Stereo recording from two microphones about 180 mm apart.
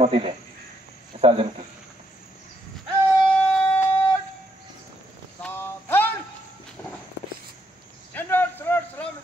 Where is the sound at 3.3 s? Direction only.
10° left (ahead or behind).